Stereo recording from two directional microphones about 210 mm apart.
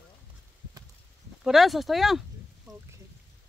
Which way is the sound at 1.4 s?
Centre (ahead or behind).